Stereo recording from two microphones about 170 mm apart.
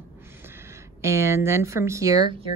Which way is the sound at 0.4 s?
15° right (ahead or behind).